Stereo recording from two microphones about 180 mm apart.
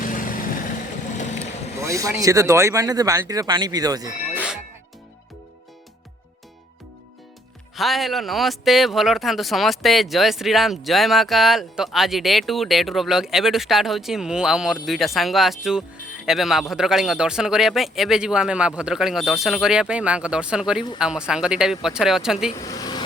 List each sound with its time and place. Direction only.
0.0 s vehicle: 50° left (ahead or behind)
1.8 s speech: 15° right (ahead or behind)
4.4 s music: 5° right (ahead or behind)
7.8 s speech: centre (ahead or behind)
22.5 s a sound: 20° left (ahead or behind)